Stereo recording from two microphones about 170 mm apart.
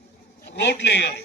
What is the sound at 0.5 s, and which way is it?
Speech, 85° left.